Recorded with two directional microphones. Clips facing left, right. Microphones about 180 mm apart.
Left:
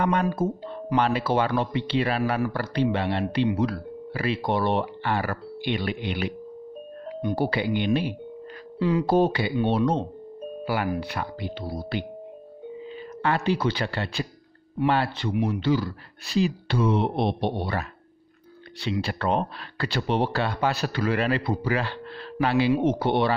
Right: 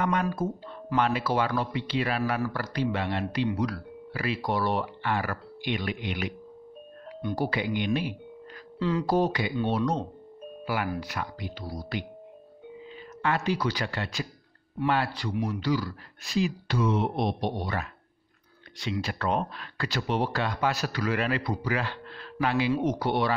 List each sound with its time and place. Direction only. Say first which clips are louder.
0.0 s speech: left 4 dB; 35° left (ahead or behind)
7.3 s speech: left 3 dB; 30° left (ahead or behind)
8.7 s speech: left 4 dB; 15° left (ahead or behind)
9.0 s speech: left 4 dB; 25° left (ahead or behind)
10.6 s doorbell: left 3 dB; 30° left (ahead or behind)
11.0 s speech: left 4 dB; 30° left (ahead or behind)
13.2 s speech: left 3 dB; 30° left (ahead or behind)